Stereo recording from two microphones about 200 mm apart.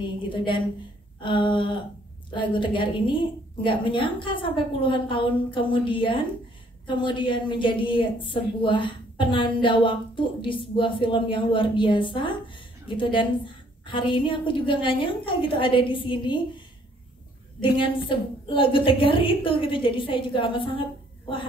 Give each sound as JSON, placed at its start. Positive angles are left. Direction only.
{"t": 0.0, "sound": "a woman's voice", "side_deg": 25}
{"t": 17.6, "sound": "a woman's voice", "side_deg": 25}